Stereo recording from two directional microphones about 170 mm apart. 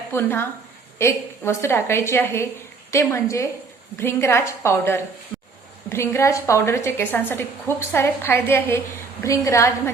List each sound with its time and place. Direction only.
0.1 s a woman's voice: 15° left (ahead or behind)
5.3 s a sound: 5° left (ahead or behind)
5.9 s a woman's voice: 15° left (ahead or behind)